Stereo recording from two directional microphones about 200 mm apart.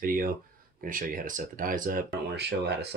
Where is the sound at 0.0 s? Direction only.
45° right (ahead or behind).